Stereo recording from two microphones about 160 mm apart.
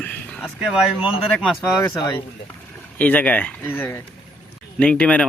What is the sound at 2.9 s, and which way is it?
Speech, 10° left (ahead or behind).